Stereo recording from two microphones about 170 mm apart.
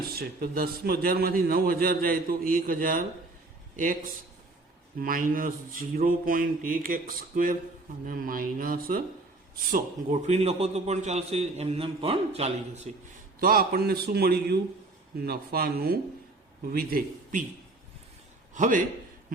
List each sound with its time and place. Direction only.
0.1 s a man's voice: 60° right (ahead or behind)
10.1 s a man's voice: 40° right (ahead or behind)
13.4 s a man's voice: 60° right (ahead or behind)
18.5 s speech: 50° right (ahead or behind)